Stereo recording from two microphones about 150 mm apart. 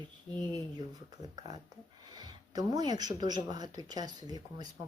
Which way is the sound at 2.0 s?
25° right (ahead or behind).